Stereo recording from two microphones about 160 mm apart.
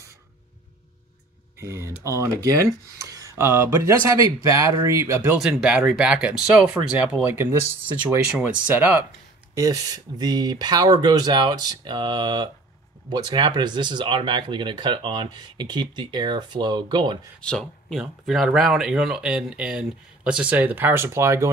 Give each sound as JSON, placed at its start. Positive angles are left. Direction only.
{"t": 1.6, "sound": "speech", "side_deg": -15}
{"t": 8.6, "sound": "speech", "side_deg": -10}
{"t": 9.6, "sound": "speech", "side_deg": -25}
{"t": 17.4, "sound": "speech", "side_deg": 5}